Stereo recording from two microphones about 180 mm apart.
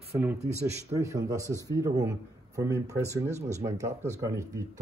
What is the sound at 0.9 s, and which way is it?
A man's voice, 15° right (ahead or behind).